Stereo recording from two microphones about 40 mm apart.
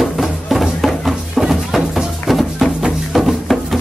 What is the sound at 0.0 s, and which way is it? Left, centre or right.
Music, centre.